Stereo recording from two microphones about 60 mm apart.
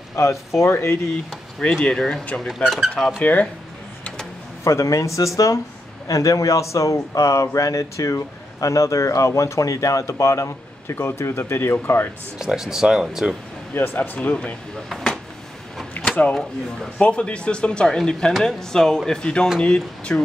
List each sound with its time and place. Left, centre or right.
0.1 s speech: left
0.6 s speech: left
1.8 s speech: centre
2.4 s speech: centre
3.2 s speech: left
4.6 s speech: left
11.0 s speech: left
12.4 s speech: centre
13.7 s speech: left
14.3 s speech: left
14.9 s speech: centre
16.2 s speech: left